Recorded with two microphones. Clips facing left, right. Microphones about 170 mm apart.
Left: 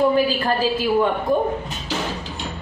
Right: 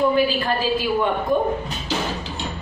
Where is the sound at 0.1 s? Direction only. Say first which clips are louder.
Left 1 dB; 40° left (ahead or behind).